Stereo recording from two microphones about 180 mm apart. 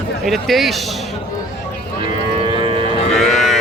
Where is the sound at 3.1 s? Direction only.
Centre (ahead or behind).